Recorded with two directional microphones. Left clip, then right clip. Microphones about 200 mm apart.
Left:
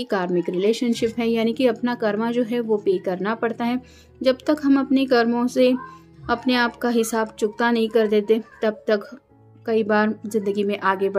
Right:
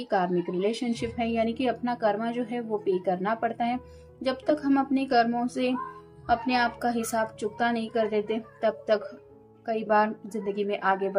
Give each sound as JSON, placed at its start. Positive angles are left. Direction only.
{"t": 0.0, "sound": "a woman's voice", "side_deg": 40}